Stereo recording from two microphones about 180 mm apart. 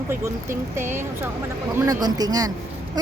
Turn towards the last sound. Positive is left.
turn(degrees=-20)  # may be behind; listen again after turning